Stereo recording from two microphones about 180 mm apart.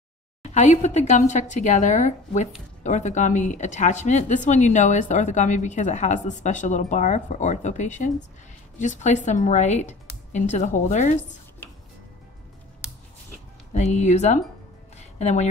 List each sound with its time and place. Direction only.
0.4 s speech: 40° left (ahead or behind)
13.7 s speech: 40° left (ahead or behind)
15.0 s a sound: 40° left (ahead or behind)